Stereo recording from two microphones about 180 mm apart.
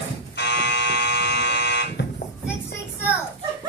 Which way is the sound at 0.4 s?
70° left (ahead or behind).